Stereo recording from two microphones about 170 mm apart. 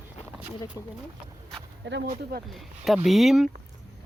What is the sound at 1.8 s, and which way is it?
Speech, 90° right.